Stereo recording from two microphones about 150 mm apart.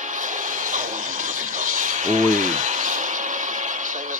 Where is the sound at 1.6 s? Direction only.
60° right (ahead or behind).